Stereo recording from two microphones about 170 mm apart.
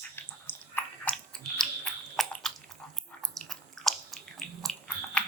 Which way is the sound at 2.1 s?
Centre (ahead or behind).